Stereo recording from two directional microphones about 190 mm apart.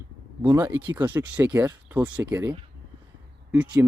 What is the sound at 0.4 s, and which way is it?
Speech, 15° right (ahead or behind).